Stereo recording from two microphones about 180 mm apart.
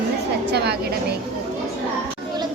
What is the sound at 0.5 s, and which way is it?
Speech, 65° right (ahead or behind).